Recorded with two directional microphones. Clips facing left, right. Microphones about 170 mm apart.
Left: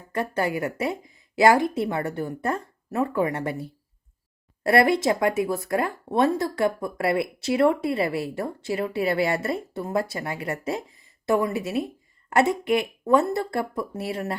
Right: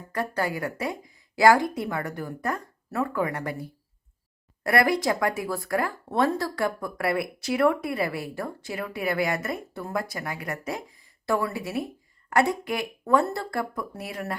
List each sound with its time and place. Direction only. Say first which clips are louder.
0.1 s speech: left 3 dB; 20° left (ahead or behind)